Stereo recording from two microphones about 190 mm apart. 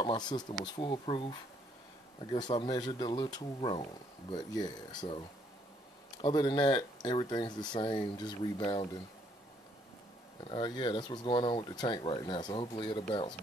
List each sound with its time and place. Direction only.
0.0 s speech: 25° left (ahead or behind)
2.5 s speech: 25° left (ahead or behind)
6.2 s speech: 25° left (ahead or behind)
10.5 s speech: 25° left (ahead or behind)